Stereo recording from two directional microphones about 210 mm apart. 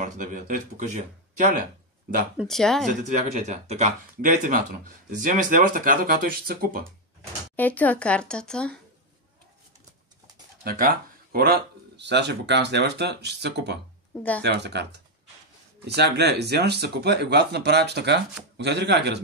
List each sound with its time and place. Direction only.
0.0 s speech: 40° right (ahead or behind)
2.3 s speech: centre (ahead or behind)
2.9 s speech: 35° right (ahead or behind)
7.5 s speech: 10° left (ahead or behind)
10.6 s speech: 45° right (ahead or behind)